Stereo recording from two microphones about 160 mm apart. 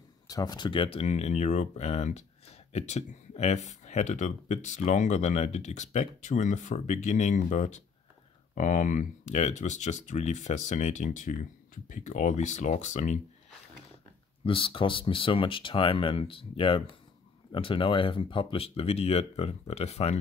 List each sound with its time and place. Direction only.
0.3 s speech: 25° left (ahead or behind); by 13.2 s 45° left (ahead or behind)
14.4 s speech: 35° left (ahead or behind)